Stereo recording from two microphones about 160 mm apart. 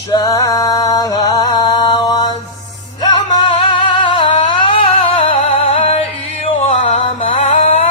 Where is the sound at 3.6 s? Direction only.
30° left (ahead or behind).